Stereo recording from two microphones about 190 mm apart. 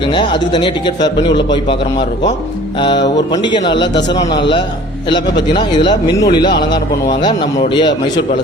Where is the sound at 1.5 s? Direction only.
25° left (ahead or behind).